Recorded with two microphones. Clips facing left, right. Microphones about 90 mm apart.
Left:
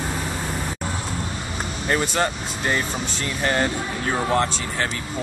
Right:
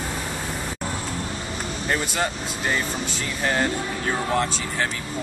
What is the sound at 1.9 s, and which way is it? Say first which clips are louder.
Speech: left 3 dB; centre (ahead or behind).